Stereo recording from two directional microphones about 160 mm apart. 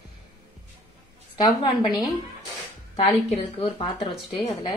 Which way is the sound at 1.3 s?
25° left (ahead or behind).